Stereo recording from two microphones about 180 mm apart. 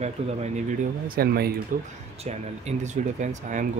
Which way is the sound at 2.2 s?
40° right (ahead or behind).